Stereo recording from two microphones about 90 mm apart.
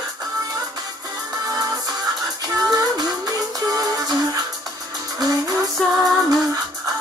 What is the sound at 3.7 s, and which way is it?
Music, 45° right (ahead or behind).